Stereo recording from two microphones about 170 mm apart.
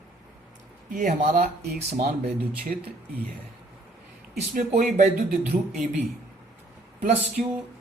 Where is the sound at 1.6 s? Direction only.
60° right (ahead or behind).